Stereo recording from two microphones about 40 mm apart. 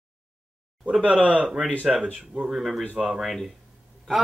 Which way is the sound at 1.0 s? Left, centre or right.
Right.